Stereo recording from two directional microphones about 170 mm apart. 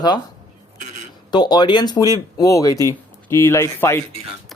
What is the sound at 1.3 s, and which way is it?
Speech, 25° left (ahead or behind).